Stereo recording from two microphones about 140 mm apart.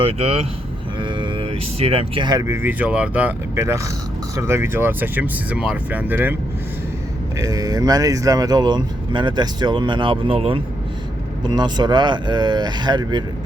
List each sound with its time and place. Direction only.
0.0 s speech: 45° right (ahead or behind); by 6.3 s 15° right (ahead or behind)
7.3 s speech: 25° right (ahead or behind); by 10.6 s 40° right (ahead or behind)
11.4 s speech: 30° right (ahead or behind)